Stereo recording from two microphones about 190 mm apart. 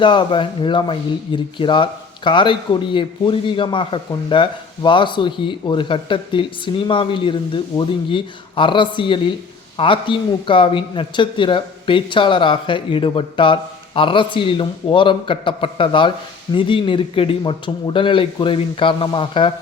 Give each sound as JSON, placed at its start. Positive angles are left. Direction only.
{"t": 0.0, "sound": "a man's voice", "side_deg": 25}